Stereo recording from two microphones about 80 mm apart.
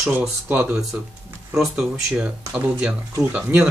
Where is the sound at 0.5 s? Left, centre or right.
Centre.